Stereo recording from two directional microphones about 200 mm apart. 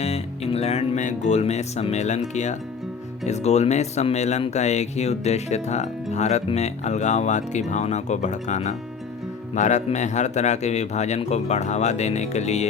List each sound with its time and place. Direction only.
0.0 s speech: 30° left (ahead or behind)